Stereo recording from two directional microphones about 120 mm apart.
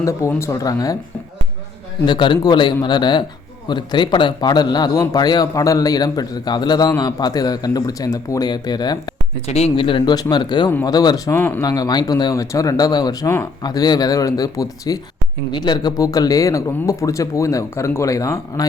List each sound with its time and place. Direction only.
0.0 s speech: 25° left (ahead or behind)
2.0 s a man's voice: 40° left (ahead or behind)
9.5 s speech: 60° left (ahead or behind)
10.2 s a man's voice: 35° left (ahead or behind)
11.3 s a man's voice: 20° left (ahead or behind)